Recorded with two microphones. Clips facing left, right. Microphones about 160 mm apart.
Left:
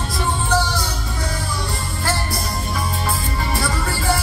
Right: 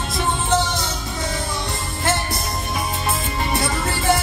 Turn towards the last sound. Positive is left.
turn(degrees=-20)  # may be behind; listen again after turning